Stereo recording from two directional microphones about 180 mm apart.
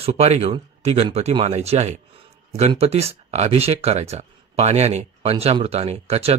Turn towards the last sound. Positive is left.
turn(degrees=-35)  # may be behind; listen again after turning